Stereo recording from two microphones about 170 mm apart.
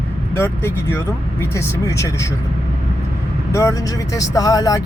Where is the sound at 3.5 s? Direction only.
20° left (ahead or behind).